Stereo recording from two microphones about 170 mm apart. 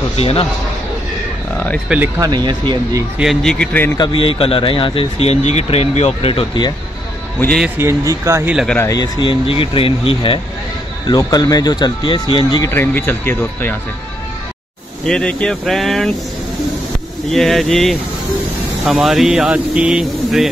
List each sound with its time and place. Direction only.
0.2 s speech: 35° left (ahead or behind)
1.9 s speech: 15° right (ahead or behind)
3.2 s a man's voice: centre (ahead or behind)
4.0 s speech: 30° left (ahead or behind)
7.3 s a man's voice: 10° left (ahead or behind)
7.6 s speech: 15° right (ahead or behind)
8.7 s speech: 20° left (ahead or behind)
15.0 s speech: 5° left (ahead or behind)
17.3 s speech: centre (ahead or behind)